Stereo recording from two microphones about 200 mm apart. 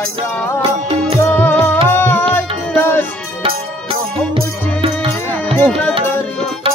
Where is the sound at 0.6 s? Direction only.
25° right (ahead or behind).